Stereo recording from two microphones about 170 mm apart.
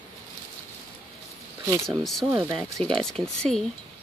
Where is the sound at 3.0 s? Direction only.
5° left (ahead or behind).